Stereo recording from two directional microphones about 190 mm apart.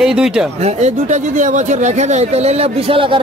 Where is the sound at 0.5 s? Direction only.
35° right (ahead or behind).